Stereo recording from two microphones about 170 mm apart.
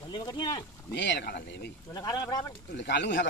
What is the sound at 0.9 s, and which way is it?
Speech, 90° left.